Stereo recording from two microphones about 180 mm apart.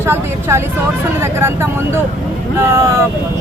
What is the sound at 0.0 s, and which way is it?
Speech, 15° right (ahead or behind).